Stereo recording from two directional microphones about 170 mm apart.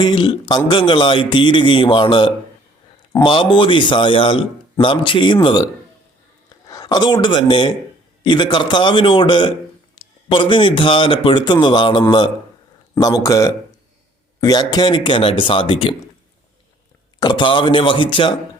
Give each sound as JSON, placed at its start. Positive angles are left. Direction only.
{"t": 0.0, "sound": "a man's voice", "side_deg": 30}
{"t": 6.7, "sound": "a man's voice", "side_deg": 20}
{"t": 17.2, "sound": "a man's voice", "side_deg": 25}